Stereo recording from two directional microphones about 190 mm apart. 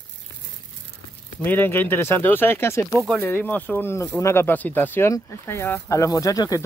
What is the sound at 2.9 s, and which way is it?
Speech, centre (ahead or behind).